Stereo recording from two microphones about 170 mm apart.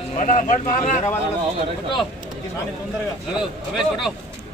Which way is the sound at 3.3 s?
Centre (ahead or behind).